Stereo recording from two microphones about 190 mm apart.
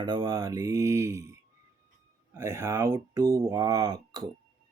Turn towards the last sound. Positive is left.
turn(degrees=-20)  # may be behind; listen again after turning